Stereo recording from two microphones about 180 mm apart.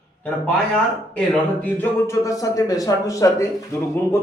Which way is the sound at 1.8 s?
15° left (ahead or behind).